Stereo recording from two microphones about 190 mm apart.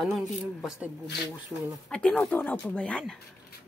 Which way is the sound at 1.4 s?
Centre (ahead or behind).